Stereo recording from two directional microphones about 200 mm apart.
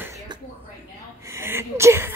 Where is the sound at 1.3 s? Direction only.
10° right (ahead or behind).